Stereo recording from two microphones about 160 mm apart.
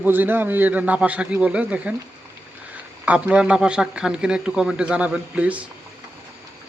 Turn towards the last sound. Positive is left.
turn(degrees=-10)  # may be behind; listen again after turning